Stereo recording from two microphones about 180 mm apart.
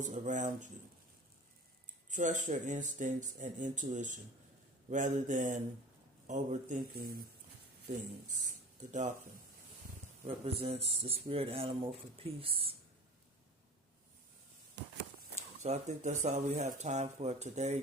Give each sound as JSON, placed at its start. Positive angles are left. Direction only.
{"t": 0.0, "sound": "speech", "side_deg": -45}
{"t": 2.0, "sound": "speech", "side_deg": -45}
{"t": 6.9, "sound": "speech", "side_deg": -55}
{"t": 8.3, "sound": "speech", "side_deg": -45}
{"t": 10.2, "sound": "speech", "side_deg": -35}
{"t": 14.8, "sound": "walk", "side_deg": -70}
{"t": 15.6, "sound": "speech", "side_deg": -40}